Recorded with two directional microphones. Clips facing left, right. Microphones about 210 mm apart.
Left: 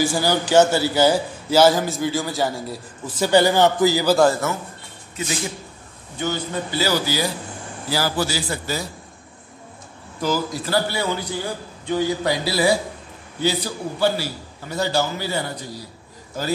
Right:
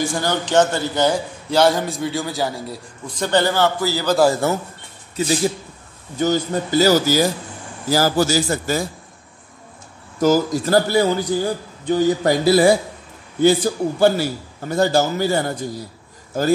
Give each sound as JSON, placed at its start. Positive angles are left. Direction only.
{"t": 0.0, "sound": "a man's voice", "side_deg": 5}
{"t": 4.4, "sound": "a man's voice", "side_deg": -35}
{"t": 10.2, "sound": "a man's voice", "side_deg": -45}